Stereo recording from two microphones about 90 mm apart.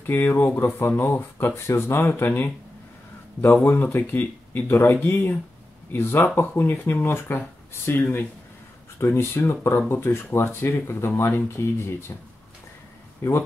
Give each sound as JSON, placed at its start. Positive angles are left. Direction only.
{"t": 0.0, "sound": "speech", "side_deg": 25}
{"t": 3.6, "sound": "speech", "side_deg": 25}
{"t": 13.2, "sound": "speech", "side_deg": 30}